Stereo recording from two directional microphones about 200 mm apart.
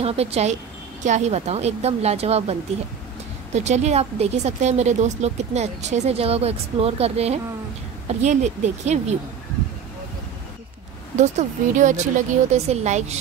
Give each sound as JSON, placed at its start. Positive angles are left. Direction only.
{"t": 0.0, "sound": "speech", "side_deg": -30}
{"t": 3.5, "sound": "speech", "side_deg": -35}
{"t": 11.1, "sound": "speech", "side_deg": -35}